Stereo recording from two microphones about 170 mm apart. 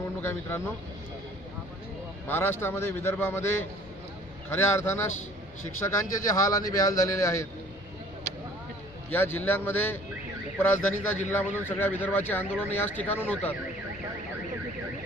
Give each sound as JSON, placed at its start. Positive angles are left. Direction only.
{"t": 0.2, "sound": "speech", "side_deg": 15}
{"t": 2.2, "sound": "speech", "side_deg": 10}
{"t": 9.1, "sound": "speech", "side_deg": 10}